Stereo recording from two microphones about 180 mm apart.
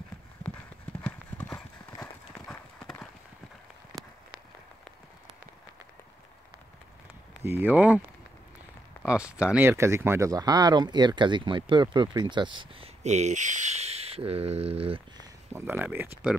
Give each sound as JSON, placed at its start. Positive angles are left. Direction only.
{"t": 1.0, "sound": "clip-clop", "side_deg": 10}
{"t": 7.4, "sound": "speech", "side_deg": -10}
{"t": 9.0, "sound": "speech", "side_deg": -5}
{"t": 15.5, "sound": "speech", "side_deg": -10}